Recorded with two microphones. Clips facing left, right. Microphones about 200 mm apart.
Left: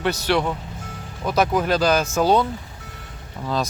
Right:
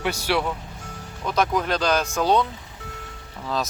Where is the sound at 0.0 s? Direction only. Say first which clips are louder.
Left 3 dB; 10° right (ahead or behind).